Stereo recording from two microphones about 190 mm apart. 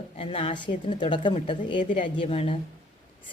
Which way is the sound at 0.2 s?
30° left (ahead or behind).